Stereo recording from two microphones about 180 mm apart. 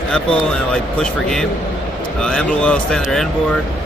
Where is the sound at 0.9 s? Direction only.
5° left (ahead or behind).